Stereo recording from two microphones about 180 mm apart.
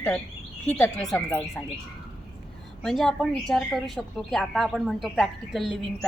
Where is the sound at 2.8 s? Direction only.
Centre (ahead or behind).